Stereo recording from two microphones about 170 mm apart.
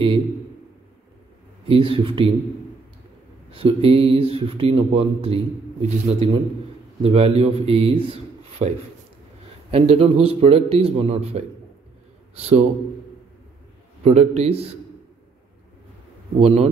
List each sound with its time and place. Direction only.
1.7 s speech: 30° right (ahead or behind)
3.4 s a man's voice: 35° right (ahead or behind)
9.7 s speech: 35° right (ahead or behind)
14.0 s speech: 40° right (ahead or behind)
16.3 s speech: 40° right (ahead or behind)